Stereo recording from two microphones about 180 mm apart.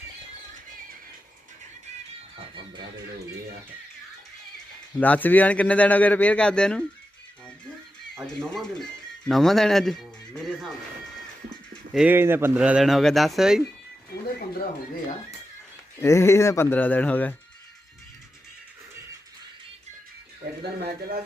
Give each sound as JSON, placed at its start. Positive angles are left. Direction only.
{"t": 4.9, "sound": "speech", "side_deg": 10}
{"t": 8.1, "sound": "speech", "side_deg": 5}
{"t": 11.9, "sound": "speech", "side_deg": -10}
{"t": 16.0, "sound": "speech", "side_deg": 15}
{"t": 20.6, "sound": "speech", "side_deg": -60}